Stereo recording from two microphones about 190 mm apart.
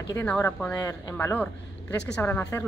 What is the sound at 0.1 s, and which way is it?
Speech, 10° left (ahead or behind).